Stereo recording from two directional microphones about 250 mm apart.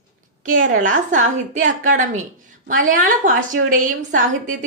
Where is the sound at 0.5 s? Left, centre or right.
Right.